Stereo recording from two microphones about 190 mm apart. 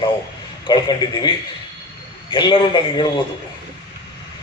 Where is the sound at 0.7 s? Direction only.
20° left (ahead or behind).